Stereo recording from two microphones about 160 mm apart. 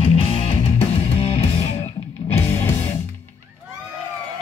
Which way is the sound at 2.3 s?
15° left (ahead or behind).